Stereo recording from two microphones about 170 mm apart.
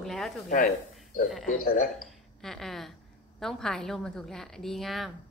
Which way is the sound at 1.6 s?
60° left (ahead or behind).